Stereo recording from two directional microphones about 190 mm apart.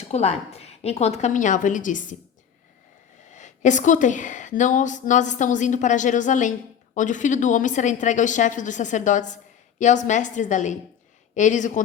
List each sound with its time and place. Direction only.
0.1 s a woman's voice: 35° left (ahead or behind)
3.2 s a woman's voice: 40° left (ahead or behind)